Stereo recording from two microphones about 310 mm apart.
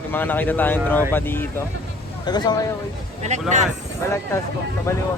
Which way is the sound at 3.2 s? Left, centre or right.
Right.